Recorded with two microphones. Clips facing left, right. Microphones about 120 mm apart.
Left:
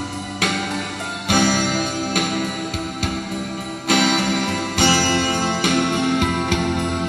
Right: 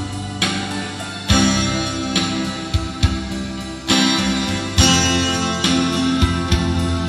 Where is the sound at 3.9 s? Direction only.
45° left (ahead or behind).